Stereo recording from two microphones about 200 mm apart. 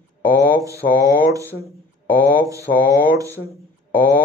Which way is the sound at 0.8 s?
15° right (ahead or behind).